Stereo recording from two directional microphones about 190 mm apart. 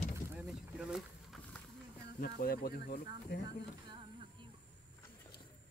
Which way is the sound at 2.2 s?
50° left (ahead or behind).